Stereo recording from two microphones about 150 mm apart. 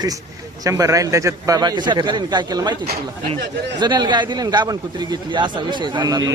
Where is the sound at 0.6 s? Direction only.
20° right (ahead or behind).